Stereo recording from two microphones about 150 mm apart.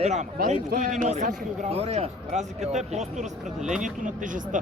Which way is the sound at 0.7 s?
55° right (ahead or behind).